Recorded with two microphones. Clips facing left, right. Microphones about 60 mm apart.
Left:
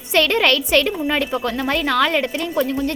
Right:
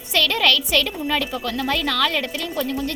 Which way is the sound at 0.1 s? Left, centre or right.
Left.